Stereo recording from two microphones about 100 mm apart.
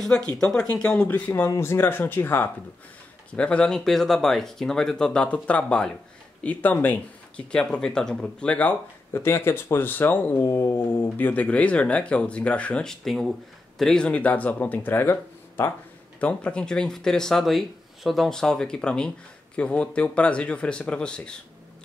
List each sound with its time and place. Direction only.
0.0 s speech: 5° left (ahead or behind)
9.1 s speech: 25° left (ahead or behind)
16.2 s speech: 15° left (ahead or behind)